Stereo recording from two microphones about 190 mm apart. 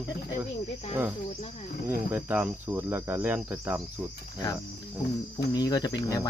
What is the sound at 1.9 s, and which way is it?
Cricket, 10° right (ahead or behind).